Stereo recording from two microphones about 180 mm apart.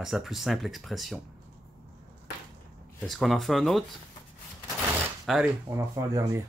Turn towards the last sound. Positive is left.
turn(degrees=-15)  # may be behind; listen again after turning